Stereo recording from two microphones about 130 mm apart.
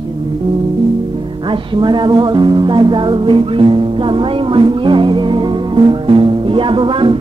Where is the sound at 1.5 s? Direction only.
35° right (ahead or behind).